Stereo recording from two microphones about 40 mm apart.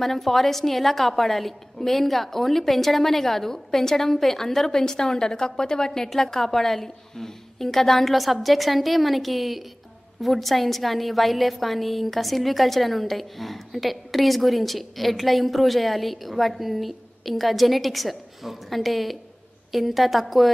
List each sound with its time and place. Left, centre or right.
0.0 s a woman's voice: centre